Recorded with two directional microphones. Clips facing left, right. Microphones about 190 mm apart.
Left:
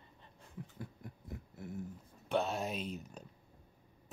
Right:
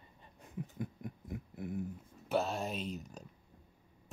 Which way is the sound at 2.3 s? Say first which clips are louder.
Even; centre (ahead or behind).